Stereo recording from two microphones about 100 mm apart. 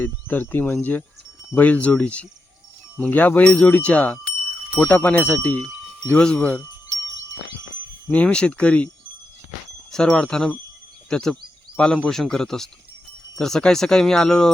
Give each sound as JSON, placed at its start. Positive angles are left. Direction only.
{"t": 0.0, "sound": "speech", "side_deg": 15}
{"t": 8.1, "sound": "speech", "side_deg": 10}
{"t": 9.9, "sound": "speech", "side_deg": 5}